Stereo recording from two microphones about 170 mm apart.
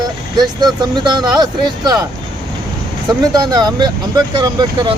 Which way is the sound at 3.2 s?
20° right (ahead or behind).